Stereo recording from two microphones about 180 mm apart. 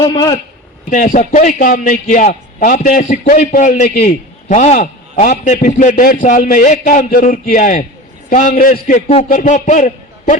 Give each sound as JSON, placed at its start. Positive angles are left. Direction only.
{"t": 0.0, "sound": "a man's voice", "side_deg": 25}
{"t": 0.9, "sound": "a man's voice", "side_deg": 45}